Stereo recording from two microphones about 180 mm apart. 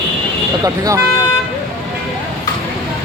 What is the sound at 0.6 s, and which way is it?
Speech, 20° right (ahead or behind).